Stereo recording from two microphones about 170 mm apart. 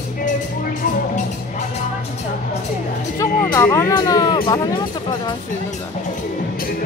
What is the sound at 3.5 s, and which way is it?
Speech, 15° left (ahead or behind).